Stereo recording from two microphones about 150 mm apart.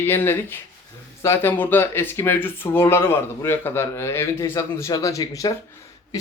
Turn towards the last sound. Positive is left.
turn(degrees=25)  # may be behind; listen again after turning